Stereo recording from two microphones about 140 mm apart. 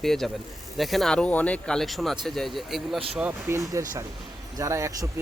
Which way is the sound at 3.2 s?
15° right (ahead or behind).